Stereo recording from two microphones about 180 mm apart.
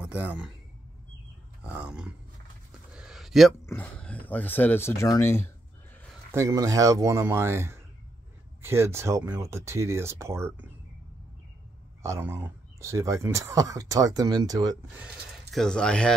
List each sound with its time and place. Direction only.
0.0 s a man's voice: 10° right (ahead or behind)
1.6 s speech: 5° right (ahead or behind)
2.9 s a sound: 5° right (ahead or behind)
3.6 s speech: 10° left (ahead or behind)
6.3 s speech: 20° right (ahead or behind)
12.0 s speech: 15° right (ahead or behind)
15.5 s speech: 5° left (ahead or behind)